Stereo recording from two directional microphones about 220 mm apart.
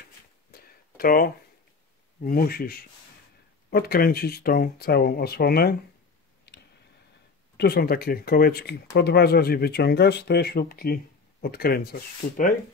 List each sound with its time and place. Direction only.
0.5 s a sound: 40° left (ahead or behind)
2.2 s speech: 45° left (ahead or behind)
6.5 s clicking: 50° left (ahead or behind)
7.5 s speech: 45° left (ahead or behind)